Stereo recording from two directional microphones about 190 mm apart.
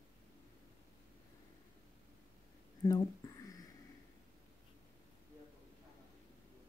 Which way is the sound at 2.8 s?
20° left (ahead or behind).